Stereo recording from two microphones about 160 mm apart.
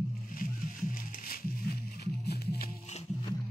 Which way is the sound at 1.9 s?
85° left.